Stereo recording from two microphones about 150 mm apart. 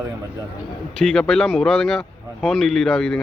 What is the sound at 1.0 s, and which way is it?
Speech, 5° left (ahead or behind).